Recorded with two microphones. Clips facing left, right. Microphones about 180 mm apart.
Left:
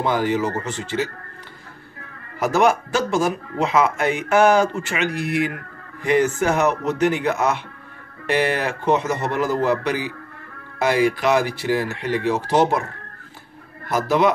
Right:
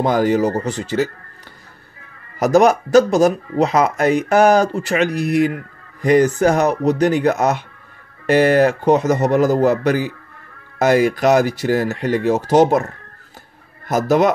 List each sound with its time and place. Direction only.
0.0 s speech: 40° right (ahead or behind)
2.3 s speech: 40° right (ahead or behind)
13.8 s speech: 45° right (ahead or behind)